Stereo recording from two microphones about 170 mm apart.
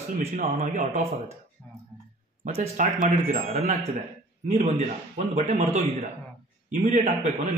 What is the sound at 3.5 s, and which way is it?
A man's voice, 40° right (ahead or behind).